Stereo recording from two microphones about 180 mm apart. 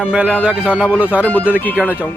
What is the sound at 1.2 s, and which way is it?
Speech, 10° left (ahead or behind).